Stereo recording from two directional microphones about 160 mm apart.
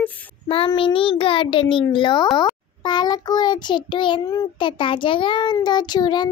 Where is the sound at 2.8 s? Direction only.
25° left (ahead or behind).